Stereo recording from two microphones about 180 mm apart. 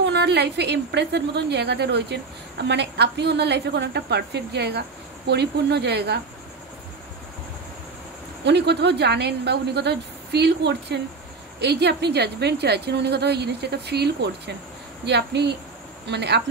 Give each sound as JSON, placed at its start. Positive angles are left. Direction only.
{"t": 0.0, "sound": "a woman's voice", "side_deg": -70}
{"t": 8.5, "sound": "a woman's voice", "side_deg": -70}